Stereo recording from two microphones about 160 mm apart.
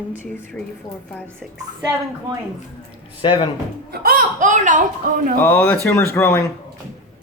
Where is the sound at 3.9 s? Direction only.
70° right (ahead or behind); by 4.8 s 55° right (ahead or behind).